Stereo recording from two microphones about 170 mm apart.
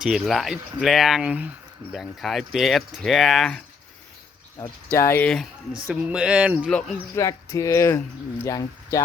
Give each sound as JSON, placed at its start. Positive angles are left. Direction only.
{"t": 0.0, "sound": "speech", "side_deg": 0}
{"t": 4.9, "sound": "speech", "side_deg": 15}
{"t": 6.7, "sound": "speech", "side_deg": 5}
{"t": 7.2, "sound": "speech", "side_deg": 20}